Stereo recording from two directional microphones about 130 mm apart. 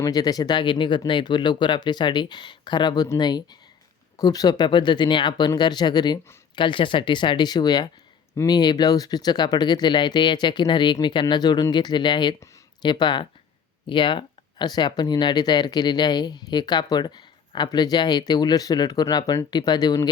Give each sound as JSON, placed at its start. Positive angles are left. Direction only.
{"t": 0.0, "sound": "speech", "side_deg": 30}